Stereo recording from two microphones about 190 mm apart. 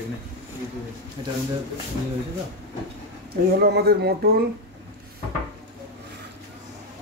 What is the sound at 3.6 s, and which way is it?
Speech, 55° right (ahead or behind).